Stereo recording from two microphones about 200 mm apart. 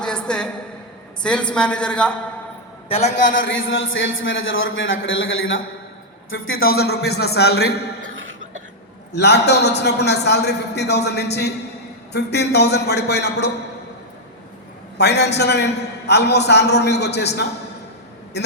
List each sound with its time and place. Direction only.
0.0 s a sound: 5° left (ahead or behind)
1.2 s a woman's voice: 5° left (ahead or behind)
2.9 s a man's voice: 35° left (ahead or behind)
3.3 s a man's voice: 75° left (ahead or behind)
6.7 s a man's voice: 55° left (ahead or behind)
8.1 s cough: 75° right (ahead or behind)
9.1 s a man's voice: 55° left (ahead or behind)
14.9 s a man's voice: 55° left (ahead or behind)